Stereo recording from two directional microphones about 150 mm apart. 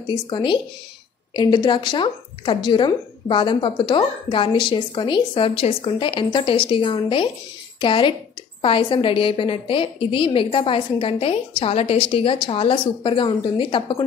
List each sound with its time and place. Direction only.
0.0 s a woman's voice: 30° left (ahead or behind)